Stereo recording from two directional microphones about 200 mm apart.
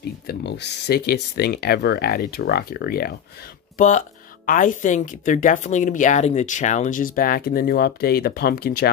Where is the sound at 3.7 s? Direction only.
40° left (ahead or behind).